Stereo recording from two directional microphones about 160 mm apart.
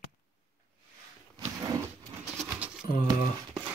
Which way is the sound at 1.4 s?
15° right (ahead or behind).